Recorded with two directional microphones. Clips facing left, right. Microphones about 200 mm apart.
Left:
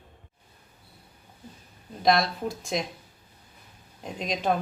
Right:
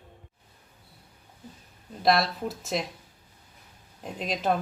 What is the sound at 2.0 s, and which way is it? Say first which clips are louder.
Speech: left 1 dB; 5° right (ahead or behind).